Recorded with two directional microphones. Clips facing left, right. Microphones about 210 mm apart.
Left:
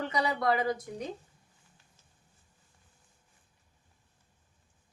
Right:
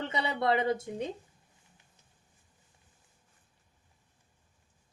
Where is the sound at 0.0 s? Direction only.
25° right (ahead or behind).